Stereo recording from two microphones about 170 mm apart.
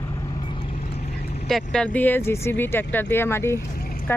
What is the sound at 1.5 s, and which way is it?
Speech, 5° left (ahead or behind).